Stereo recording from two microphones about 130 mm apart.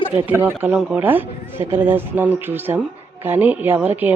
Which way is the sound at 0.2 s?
15° right (ahead or behind).